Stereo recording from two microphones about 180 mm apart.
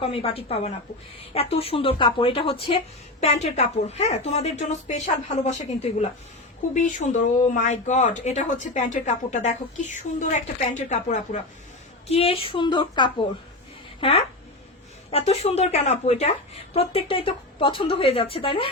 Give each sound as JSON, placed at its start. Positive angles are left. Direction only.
{"t": 0.0, "sound": "speech", "side_deg": 30}